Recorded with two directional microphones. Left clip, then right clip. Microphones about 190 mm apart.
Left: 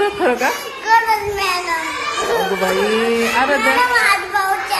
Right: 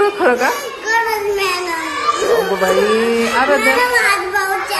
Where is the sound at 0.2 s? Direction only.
25° left (ahead or behind).